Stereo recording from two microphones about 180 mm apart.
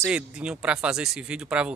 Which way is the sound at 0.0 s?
5° right (ahead or behind).